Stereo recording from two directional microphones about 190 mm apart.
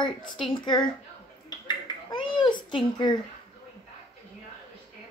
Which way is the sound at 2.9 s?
25° left (ahead or behind).